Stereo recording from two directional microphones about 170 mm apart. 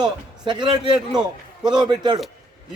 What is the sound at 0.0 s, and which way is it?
A man's voice, 25° right (ahead or behind).